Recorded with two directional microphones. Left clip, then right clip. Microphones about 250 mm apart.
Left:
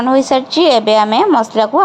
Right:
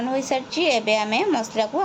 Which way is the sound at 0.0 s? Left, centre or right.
Centre.